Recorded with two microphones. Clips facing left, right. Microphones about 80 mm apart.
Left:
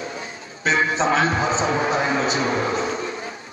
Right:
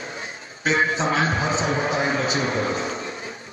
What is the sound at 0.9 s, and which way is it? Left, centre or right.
A man's voice, left.